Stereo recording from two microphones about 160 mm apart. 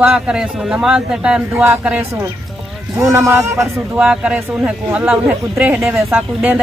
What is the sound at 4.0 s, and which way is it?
A man's voice, 5° right (ahead or behind).